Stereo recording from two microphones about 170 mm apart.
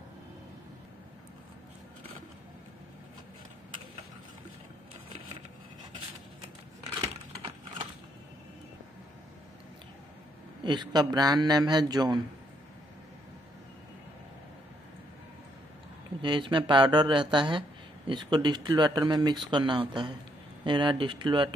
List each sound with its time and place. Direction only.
7.0 s computer keyboard: 30° right (ahead or behind)
10.6 s speech: 25° right (ahead or behind)
16.2 s speech: 30° right (ahead or behind)